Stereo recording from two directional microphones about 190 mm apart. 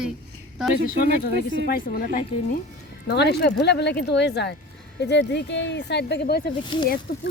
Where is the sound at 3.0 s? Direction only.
60° left (ahead or behind).